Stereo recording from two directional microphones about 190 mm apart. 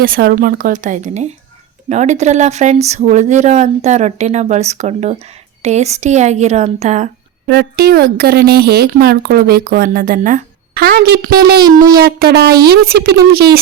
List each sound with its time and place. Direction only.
0.0 s speech: 50° right (ahead or behind)
7.4 s speech: 55° right (ahead or behind)